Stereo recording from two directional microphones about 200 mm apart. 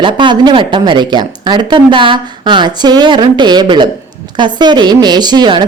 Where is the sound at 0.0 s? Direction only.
25° right (ahead or behind).